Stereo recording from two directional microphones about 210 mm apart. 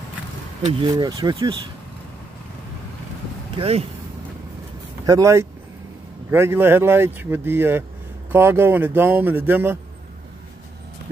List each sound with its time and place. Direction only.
0.6 s speech: 20° right (ahead or behind)
3.5 s speech: 30° right (ahead or behind)
5.0 s speech: 15° right (ahead or behind)